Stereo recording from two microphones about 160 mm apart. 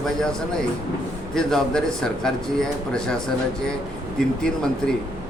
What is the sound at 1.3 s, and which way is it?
Speech, 5° left (ahead or behind).